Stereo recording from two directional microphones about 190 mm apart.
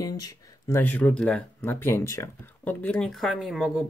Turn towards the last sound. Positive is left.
turn(degrees=0)  # may be behind; listen again after turning